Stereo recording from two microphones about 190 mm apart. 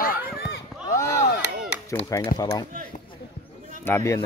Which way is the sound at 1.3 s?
65° left (ahead or behind).